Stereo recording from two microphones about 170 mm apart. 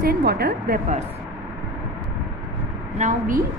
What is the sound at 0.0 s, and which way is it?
Speech, 65° right (ahead or behind).